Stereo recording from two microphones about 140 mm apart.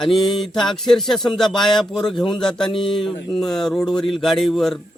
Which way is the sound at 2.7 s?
40° left (ahead or behind).